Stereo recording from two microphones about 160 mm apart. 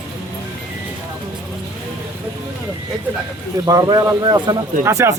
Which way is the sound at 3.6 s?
20° right (ahead or behind).